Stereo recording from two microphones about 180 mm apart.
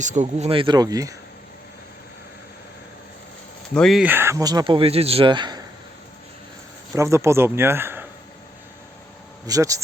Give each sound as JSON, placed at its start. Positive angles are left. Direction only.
{"t": 0.0, "sound": "speech", "side_deg": -40}
{"t": 3.8, "sound": "speech", "side_deg": 0}
{"t": 4.0, "sound": "speech", "side_deg": -10}
{"t": 6.9, "sound": "speech", "side_deg": -15}
{"t": 9.5, "sound": "speech", "side_deg": -20}